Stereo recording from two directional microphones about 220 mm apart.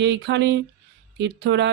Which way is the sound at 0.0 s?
50° right (ahead or behind).